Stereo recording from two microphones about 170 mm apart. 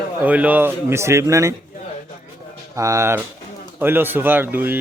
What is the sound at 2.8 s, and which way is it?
Speech, 15° right (ahead or behind).